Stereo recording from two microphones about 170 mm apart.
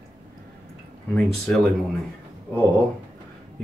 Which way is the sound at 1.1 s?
Centre (ahead or behind).